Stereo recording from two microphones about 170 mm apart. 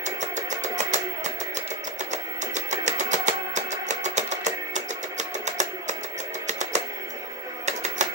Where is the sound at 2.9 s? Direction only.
45° right (ahead or behind).